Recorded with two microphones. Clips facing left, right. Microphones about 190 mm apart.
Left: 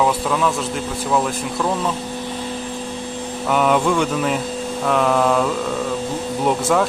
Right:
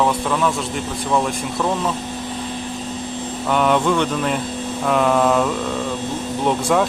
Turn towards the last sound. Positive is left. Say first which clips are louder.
# even
turn(degrees=0)  # may be behind; listen again after turning